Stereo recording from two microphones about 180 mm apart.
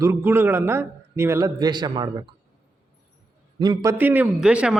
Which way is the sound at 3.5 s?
25° right (ahead or behind).